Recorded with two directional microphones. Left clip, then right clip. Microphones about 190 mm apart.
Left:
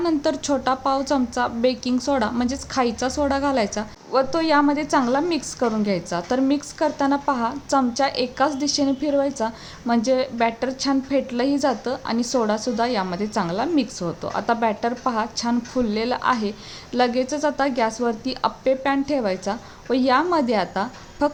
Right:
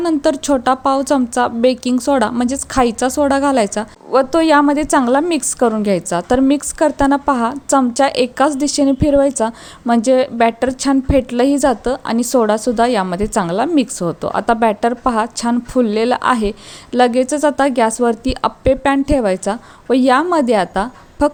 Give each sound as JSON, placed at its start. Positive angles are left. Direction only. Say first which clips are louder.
{"t": 0.0, "sound": "a woman's voice", "louder": "right 6 dB", "side_deg": -35}